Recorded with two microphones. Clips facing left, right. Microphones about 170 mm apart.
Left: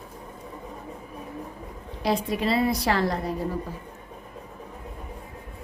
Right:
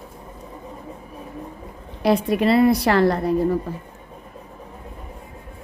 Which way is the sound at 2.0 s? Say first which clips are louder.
Right 7 dB; 60° right (ahead or behind).